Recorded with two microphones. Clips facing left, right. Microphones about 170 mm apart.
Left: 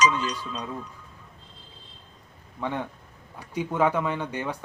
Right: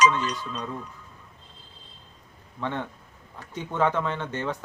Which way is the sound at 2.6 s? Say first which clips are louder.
Left 1 dB; 10° left (ahead or behind).